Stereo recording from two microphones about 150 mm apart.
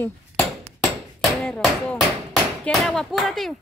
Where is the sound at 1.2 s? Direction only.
Centre (ahead or behind).